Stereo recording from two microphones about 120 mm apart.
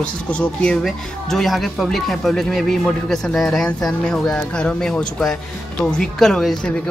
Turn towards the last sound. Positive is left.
turn(degrees=5)  # may be behind; listen again after turning